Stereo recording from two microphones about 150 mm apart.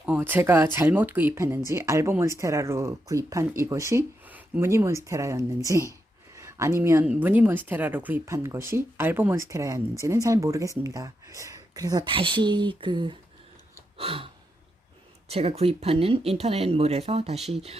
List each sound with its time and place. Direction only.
0.0 s speech: 10° right (ahead or behind)
6.3 s a sound: 20° right (ahead or behind)
7.0 s speech: 10° right (ahead or behind); by 13.1 s 30° right (ahead or behind)
14.0 s gasp: 40° right (ahead or behind)
15.3 s speech: 45° right (ahead or behind)